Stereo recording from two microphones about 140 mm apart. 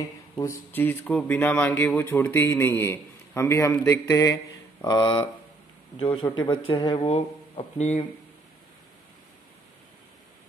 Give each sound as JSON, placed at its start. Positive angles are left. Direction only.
{"t": 0.7, "sound": "speech", "side_deg": 15}
{"t": 4.8, "sound": "speech", "side_deg": 30}
{"t": 7.7, "sound": "speech", "side_deg": 55}